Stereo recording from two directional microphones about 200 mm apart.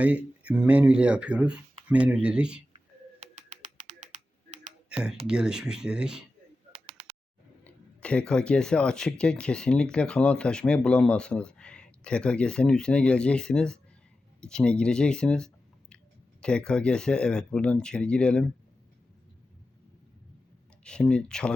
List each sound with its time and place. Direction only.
0.0 s speech: 5° right (ahead or behind)
3.3 s a sound: 35° right (ahead or behind)
4.9 s speech: 5° right (ahead or behind)
6.7 s a sound: 30° right (ahead or behind)
7.6 s speech: 5° left (ahead or behind)
20.8 s speech: 5° left (ahead or behind)